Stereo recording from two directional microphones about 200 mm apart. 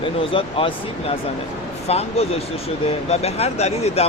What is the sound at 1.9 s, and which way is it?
Speech, 30° left (ahead or behind).